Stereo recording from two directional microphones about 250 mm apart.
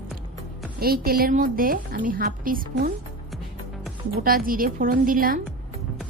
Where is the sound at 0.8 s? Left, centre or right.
Right.